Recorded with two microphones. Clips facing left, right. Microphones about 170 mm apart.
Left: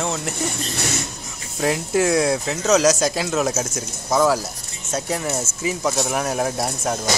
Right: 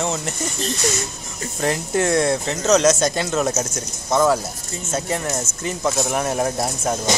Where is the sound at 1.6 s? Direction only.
Centre (ahead or behind).